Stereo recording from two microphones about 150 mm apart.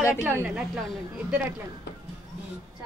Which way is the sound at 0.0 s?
15° right (ahead or behind).